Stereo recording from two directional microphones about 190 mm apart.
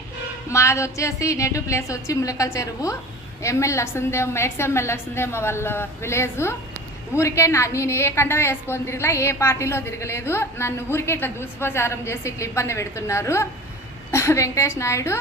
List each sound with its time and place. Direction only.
0.5 s a woman's voice: 15° left (ahead or behind)